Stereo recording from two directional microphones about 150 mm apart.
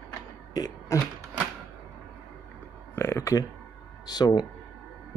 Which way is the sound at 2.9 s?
20° left (ahead or behind).